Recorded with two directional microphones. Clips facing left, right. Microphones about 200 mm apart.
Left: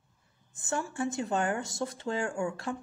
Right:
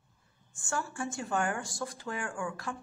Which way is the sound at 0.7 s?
20° left (ahead or behind).